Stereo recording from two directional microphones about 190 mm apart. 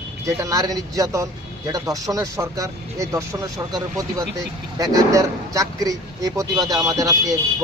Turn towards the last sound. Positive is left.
turn(degrees=-20)  # may be behind; listen again after turning